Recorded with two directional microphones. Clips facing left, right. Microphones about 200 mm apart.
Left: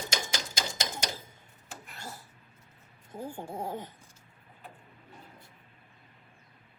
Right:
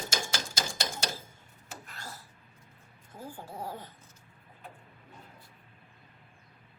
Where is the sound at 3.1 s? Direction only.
25° left (ahead or behind).